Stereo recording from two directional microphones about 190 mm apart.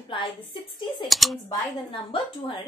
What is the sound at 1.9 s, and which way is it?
Speech, 25° left (ahead or behind).